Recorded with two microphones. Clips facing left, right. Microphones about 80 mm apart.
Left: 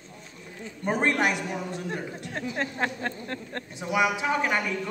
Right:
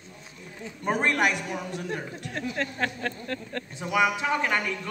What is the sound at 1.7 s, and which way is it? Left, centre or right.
Speech, left.